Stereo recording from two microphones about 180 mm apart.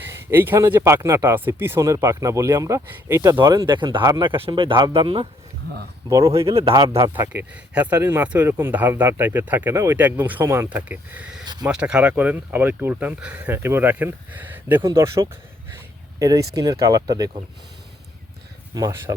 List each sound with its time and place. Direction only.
0.1 s speech: 10° right (ahead or behind); by 5.3 s 30° right (ahead or behind)
6.1 s speech: 15° right (ahead or behind)
6.6 s speech: 30° right (ahead or behind)
6.9 s speech: 15° right (ahead or behind)
18.7 s speech: 20° right (ahead or behind)